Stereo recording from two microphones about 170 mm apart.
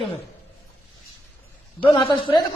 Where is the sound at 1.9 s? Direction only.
25° left (ahead or behind).